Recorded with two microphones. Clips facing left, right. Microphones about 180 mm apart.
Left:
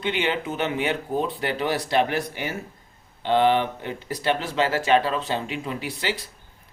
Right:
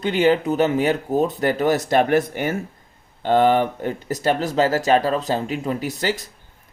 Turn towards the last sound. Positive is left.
turn(degrees=-45)  # may be behind; listen again after turning